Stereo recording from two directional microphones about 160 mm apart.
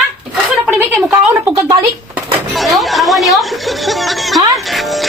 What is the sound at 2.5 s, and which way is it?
Speech, centre (ahead or behind).